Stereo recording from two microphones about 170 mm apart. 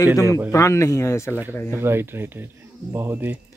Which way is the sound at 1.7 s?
15° right (ahead or behind).